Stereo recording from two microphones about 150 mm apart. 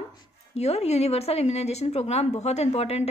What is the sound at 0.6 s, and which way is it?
A woman's voice, 45° left (ahead or behind).